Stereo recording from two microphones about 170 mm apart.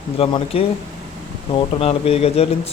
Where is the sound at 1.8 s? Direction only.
35° left (ahead or behind).